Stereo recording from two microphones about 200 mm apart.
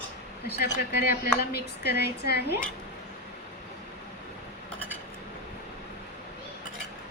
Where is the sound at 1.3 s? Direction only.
55° left (ahead or behind).